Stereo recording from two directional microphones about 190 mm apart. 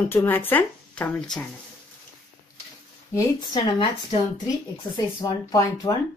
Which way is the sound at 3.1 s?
25° left (ahead or behind).